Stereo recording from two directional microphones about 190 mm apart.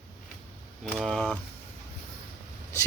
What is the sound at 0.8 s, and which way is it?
Speech, centre (ahead or behind).